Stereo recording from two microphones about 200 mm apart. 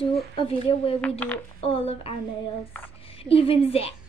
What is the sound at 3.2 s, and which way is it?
Speech, 30° left (ahead or behind).